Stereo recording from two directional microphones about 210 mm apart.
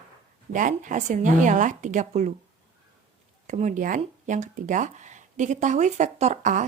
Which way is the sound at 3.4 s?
35° right (ahead or behind).